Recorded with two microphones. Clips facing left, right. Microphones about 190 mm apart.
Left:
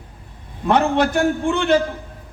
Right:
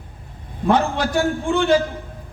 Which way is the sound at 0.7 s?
60° left (ahead or behind).